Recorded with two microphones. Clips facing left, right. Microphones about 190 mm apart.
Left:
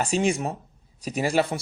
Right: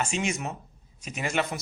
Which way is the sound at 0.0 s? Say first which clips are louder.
Left 6 dB; 35° left (ahead or behind).